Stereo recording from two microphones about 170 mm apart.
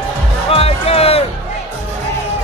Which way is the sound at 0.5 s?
35° left (ahead or behind).